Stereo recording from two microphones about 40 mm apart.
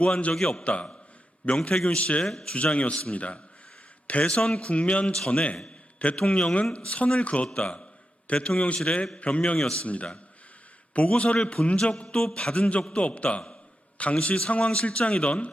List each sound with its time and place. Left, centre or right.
0.3 s a man's voice: centre
0.6 s a man's voice: left
1.5 s a man's voice: centre
2.0 s a man's voice: left
2.2 s a man's voice: left
5.6 s a sound: left
6.1 s a man's voice: left
7.4 s a man's voice: left
9.6 s a man's voice: centre
9.8 s a man's voice: left